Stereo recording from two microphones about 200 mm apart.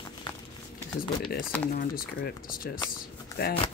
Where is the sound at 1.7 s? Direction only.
45° left (ahead or behind).